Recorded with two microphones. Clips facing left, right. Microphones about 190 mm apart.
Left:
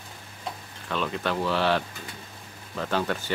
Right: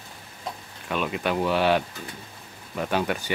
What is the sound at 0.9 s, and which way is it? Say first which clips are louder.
Speech: right 2 dB; 15° right (ahead or behind).